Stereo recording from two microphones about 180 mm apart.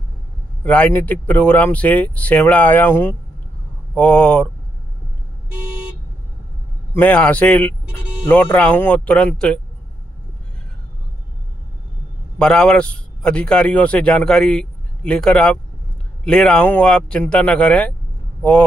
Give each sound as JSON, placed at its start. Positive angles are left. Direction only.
{"t": 0.7, "sound": "speech", "side_deg": 10}
{"t": 6.9, "sound": "speech", "side_deg": 10}
{"t": 12.4, "sound": "a man's voice", "side_deg": 5}